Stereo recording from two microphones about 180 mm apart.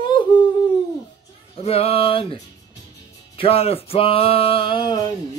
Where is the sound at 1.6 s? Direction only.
35° left (ahead or behind).